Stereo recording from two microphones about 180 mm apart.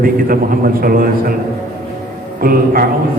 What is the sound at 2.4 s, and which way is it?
Speech, 55° right (ahead or behind).